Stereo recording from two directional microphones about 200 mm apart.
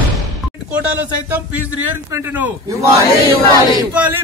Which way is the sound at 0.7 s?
10° right (ahead or behind).